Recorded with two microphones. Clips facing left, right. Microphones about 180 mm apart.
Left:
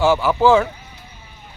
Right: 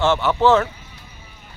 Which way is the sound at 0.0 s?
Centre (ahead or behind).